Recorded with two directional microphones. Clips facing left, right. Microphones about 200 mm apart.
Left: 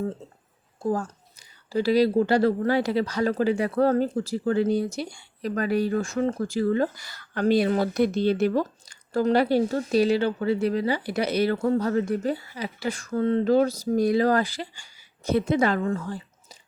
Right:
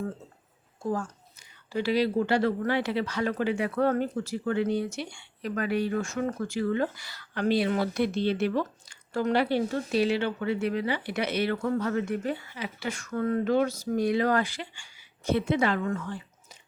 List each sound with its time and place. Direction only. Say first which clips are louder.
0.8 s a woman's voice: left 4 dB; 35° left (ahead or behind)